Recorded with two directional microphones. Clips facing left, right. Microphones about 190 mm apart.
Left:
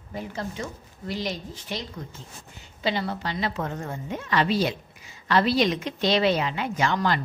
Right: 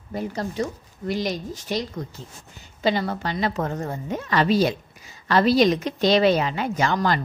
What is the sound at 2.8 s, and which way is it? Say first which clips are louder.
A woman's voice: right 4 dB; 45° right (ahead or behind).